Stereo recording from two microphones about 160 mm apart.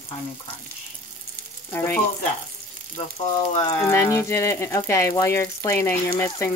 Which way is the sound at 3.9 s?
15° left (ahead or behind).